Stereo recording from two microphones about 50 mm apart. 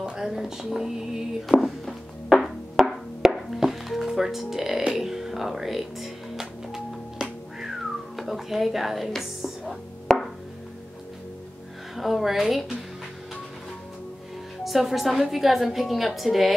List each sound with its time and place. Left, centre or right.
0.1 s music: centre
2.3 s music: centre
8.2 s speech: centre
12.0 s a woman's voice: centre
14.6 s a woman's voice: centre